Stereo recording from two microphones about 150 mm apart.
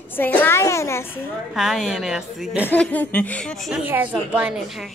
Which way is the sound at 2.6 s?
10° left (ahead or behind).